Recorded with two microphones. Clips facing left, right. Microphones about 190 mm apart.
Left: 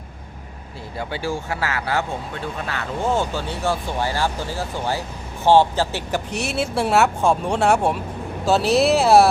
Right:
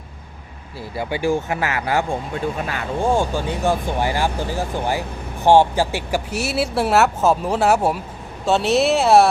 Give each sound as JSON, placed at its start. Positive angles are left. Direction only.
{"t": 0.9, "sound": "speech", "side_deg": -15}